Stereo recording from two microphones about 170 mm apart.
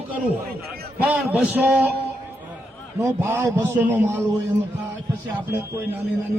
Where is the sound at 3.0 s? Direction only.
15° right (ahead or behind).